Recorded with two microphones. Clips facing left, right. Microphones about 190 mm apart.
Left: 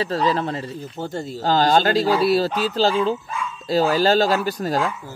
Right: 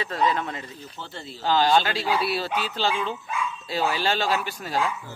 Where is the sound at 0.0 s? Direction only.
35° left (ahead or behind).